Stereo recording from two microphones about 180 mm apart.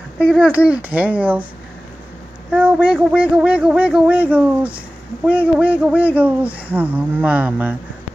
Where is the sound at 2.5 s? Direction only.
5° right (ahead or behind).